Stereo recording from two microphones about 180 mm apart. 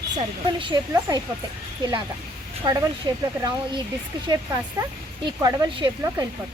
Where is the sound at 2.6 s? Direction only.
25° right (ahead or behind).